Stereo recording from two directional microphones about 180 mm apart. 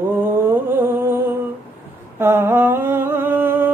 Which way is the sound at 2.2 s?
10° right (ahead or behind).